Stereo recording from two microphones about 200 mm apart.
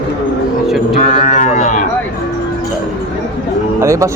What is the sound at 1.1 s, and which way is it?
Speech, 40° left (ahead or behind).